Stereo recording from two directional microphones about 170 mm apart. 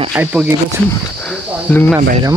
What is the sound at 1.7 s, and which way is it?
Speech, 10° left (ahead or behind).